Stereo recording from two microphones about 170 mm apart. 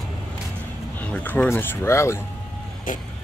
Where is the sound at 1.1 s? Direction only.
10° left (ahead or behind).